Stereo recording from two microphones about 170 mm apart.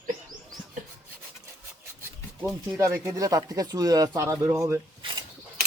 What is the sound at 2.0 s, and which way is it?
Speech, 15° right (ahead or behind).